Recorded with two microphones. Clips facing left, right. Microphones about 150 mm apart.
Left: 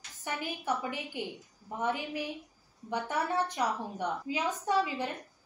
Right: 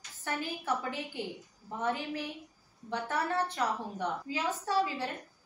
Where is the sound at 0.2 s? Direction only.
15° left (ahead or behind).